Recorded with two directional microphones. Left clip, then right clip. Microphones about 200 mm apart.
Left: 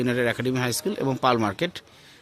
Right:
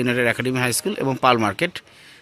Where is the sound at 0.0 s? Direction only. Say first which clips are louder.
Right 4 dB; 5° right (ahead or behind).